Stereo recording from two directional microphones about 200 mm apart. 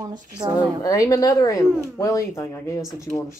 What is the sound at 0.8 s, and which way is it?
Speech, 20° left (ahead or behind).